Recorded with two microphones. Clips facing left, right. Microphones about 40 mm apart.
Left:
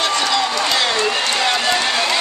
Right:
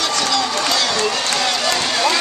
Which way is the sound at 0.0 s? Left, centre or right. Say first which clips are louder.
Left 1 dB; centre.